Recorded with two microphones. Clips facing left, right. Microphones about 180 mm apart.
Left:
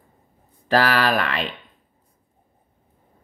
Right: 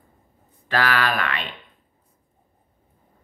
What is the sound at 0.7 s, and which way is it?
Speech, 40° left (ahead or behind).